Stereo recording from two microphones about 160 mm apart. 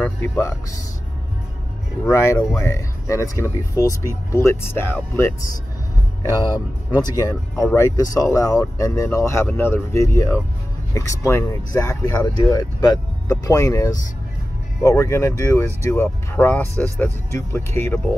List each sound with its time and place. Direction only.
0.0 s speech: 15° left (ahead or behind)
2.0 s speech: 20° left (ahead or behind)
6.2 s speech: 25° left (ahead or behind)